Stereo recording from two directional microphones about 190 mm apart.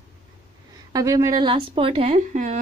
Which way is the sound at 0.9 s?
15° right (ahead or behind).